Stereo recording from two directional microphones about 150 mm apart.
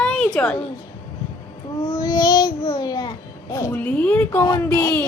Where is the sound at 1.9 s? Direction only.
25° left (ahead or behind).